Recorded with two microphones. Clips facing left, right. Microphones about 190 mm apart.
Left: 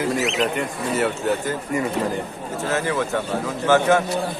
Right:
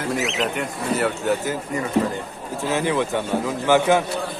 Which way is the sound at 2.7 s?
15° right (ahead or behind).